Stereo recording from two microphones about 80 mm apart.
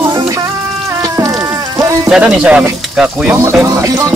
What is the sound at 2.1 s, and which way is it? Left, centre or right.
Speech, centre.